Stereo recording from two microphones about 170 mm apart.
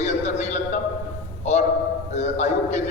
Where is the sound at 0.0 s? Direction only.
40° left (ahead or behind).